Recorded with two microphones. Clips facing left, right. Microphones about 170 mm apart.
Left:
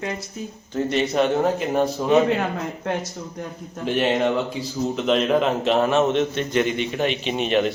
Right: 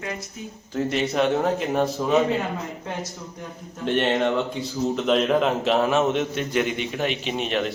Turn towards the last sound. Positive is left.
turn(degrees=0)  # may be behind; listen again after turning